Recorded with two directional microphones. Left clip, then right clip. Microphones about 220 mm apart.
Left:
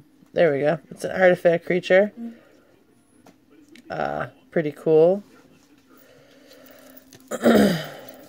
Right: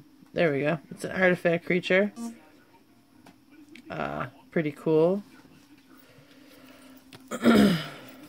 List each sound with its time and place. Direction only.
0.3 s speech: 5° left (ahead or behind)
3.7 s speech: 10° left (ahead or behind)
6.6 s a sound: 10° left (ahead or behind)